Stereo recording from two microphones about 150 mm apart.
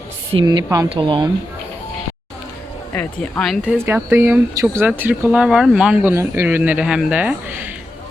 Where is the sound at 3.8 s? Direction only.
15° right (ahead or behind).